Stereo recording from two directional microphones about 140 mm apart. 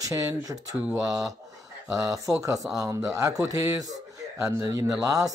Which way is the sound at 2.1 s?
25° right (ahead or behind).